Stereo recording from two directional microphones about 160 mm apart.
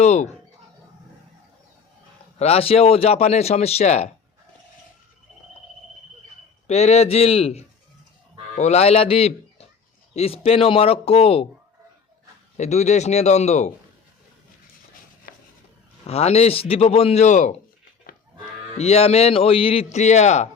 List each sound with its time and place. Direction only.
0.0 s a man's voice: 45° left (ahead or behind)
2.4 s speech: 40° left (ahead or behind)
6.7 s a man's voice: 40° left (ahead or behind)
12.5 s a man's voice: 45° left (ahead or behind)
16.0 s speech: 40° left (ahead or behind)
18.1 s livestock: 65° left (ahead or behind)
18.8 s speech: 40° left (ahead or behind)